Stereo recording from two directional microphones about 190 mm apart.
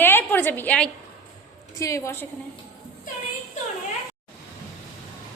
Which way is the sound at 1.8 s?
15° left (ahead or behind).